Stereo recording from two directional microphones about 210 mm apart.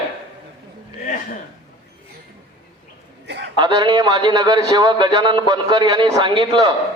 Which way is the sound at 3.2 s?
55° right (ahead or behind).